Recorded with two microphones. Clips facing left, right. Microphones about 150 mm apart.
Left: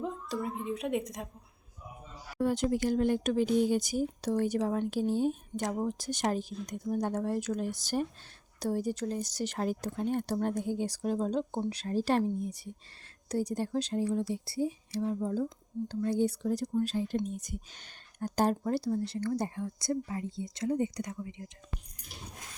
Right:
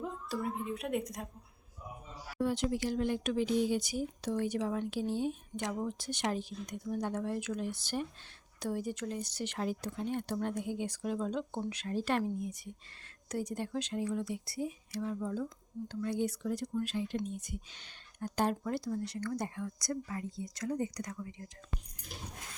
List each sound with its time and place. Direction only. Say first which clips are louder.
0.0 s a woman's voice: left 2 dB; 5° right (ahead or behind)
2.4 s speech: left 4 dB; 45° left (ahead or behind); by 21.5 s 20° left (ahead or behind)